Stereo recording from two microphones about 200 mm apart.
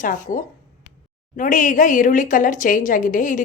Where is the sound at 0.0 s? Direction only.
40° left (ahead or behind).